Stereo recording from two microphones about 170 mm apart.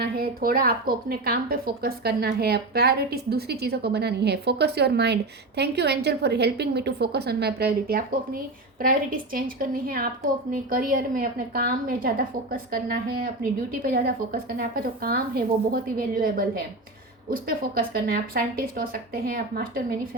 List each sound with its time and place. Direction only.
0.0 s a woman's voice: 60° right (ahead or behind)